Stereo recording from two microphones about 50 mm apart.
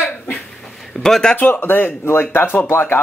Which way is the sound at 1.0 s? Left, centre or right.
Centre.